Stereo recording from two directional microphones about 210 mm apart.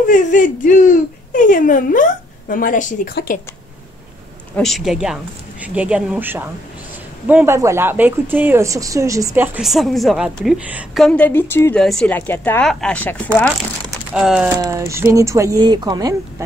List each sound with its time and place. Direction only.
0.1 s speech: 35° left (ahead or behind)
4.6 s speech: centre (ahead or behind)
11.1 s a woman's voice: 5° left (ahead or behind)
14.1 s speech: 5° right (ahead or behind)
14.6 s speech: 15° right (ahead or behind)